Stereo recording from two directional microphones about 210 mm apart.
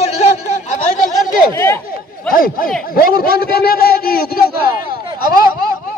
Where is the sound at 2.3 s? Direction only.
45° left (ahead or behind).